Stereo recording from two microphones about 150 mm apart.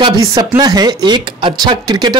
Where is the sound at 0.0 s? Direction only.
25° right (ahead or behind).